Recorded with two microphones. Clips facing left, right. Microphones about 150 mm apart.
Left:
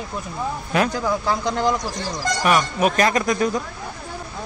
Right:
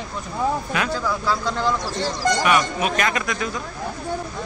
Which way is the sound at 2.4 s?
45° left (ahead or behind).